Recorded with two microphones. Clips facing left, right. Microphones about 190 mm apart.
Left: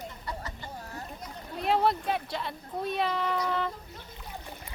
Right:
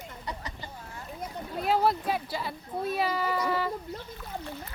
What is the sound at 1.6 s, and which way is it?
Speech, centre (ahead or behind).